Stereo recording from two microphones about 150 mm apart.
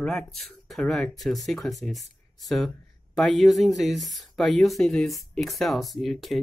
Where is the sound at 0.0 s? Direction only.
Centre (ahead or behind).